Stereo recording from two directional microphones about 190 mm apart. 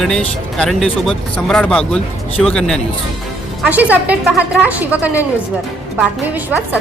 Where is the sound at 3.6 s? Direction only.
10° right (ahead or behind).